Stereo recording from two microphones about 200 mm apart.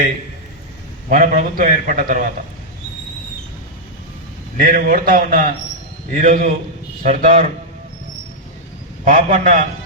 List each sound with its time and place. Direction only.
1.1 s a man's voice: 40° right (ahead or behind)
4.5 s a man's voice: 45° right (ahead or behind)
9.0 s a man's voice: 45° right (ahead or behind)